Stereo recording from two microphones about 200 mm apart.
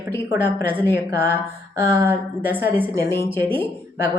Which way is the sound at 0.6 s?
10° right (ahead or behind).